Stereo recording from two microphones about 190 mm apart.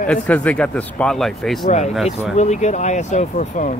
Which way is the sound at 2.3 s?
35° left (ahead or behind).